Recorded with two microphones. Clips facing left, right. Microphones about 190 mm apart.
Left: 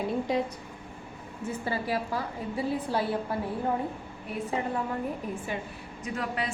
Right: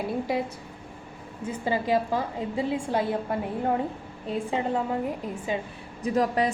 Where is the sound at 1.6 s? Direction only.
20° right (ahead or behind).